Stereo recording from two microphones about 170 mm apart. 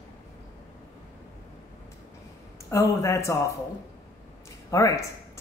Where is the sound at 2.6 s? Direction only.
15° left (ahead or behind).